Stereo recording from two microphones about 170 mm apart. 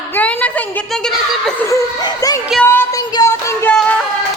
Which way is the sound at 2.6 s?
15° left (ahead or behind).